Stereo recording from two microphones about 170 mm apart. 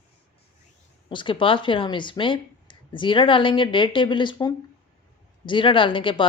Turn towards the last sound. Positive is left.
turn(degrees=30)  # may be behind; listen again after turning